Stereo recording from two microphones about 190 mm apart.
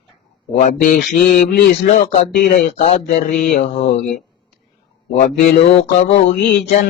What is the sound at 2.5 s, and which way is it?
Speech, 40° left (ahead or behind).